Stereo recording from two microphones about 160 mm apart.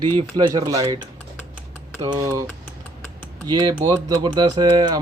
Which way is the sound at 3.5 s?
30° right (ahead or behind).